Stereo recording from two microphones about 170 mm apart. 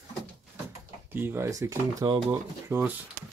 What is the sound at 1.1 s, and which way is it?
Speech, 10° right (ahead or behind).